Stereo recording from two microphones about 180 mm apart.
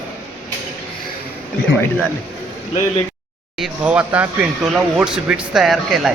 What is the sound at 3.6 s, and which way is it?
Speech, 5° right (ahead or behind).